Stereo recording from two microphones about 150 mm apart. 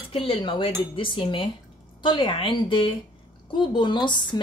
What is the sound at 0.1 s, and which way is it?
A woman's voice, 40° left (ahead or behind).